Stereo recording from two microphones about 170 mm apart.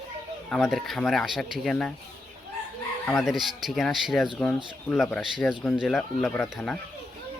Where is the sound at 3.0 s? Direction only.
Centre (ahead or behind).